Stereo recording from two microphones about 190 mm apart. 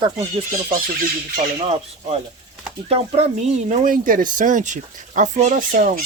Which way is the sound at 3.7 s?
45° right (ahead or behind).